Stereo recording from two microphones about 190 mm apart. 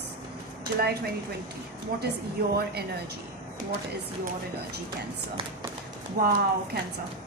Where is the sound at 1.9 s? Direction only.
55° right (ahead or behind).